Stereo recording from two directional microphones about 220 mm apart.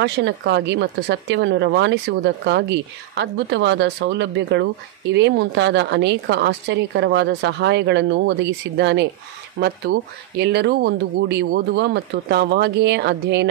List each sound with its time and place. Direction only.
0.0 s speech: 55° right (ahead or behind)